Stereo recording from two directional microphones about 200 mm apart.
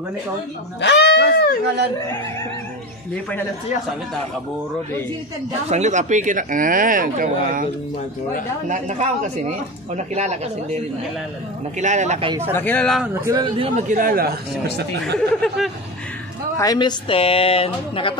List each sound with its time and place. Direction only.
0.7 s speech: 60° left (ahead or behind)
5.7 s speech: 35° right (ahead or behind)
8.6 s speech: 40° right (ahead or behind)
11.8 s speech: 35° right (ahead or behind)
12.5 s speech: 10° left (ahead or behind)
13.0 s speech: 15° right (ahead or behind)
13.8 s speech: 45° right (ahead or behind)
15.1 s speech: centre (ahead or behind)
16.5 s speech: 20° left (ahead or behind)